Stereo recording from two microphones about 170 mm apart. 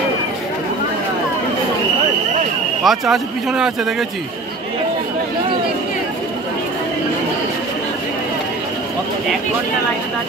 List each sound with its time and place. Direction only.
2.8 s speech: centre (ahead or behind)